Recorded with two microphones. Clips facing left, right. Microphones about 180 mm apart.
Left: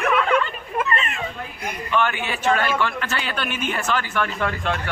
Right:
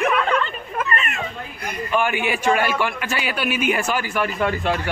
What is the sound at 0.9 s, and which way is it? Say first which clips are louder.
Cat: even; 25° left (ahead or behind).